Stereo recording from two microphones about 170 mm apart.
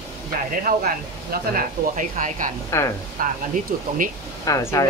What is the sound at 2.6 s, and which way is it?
Speech, 20° left (ahead or behind).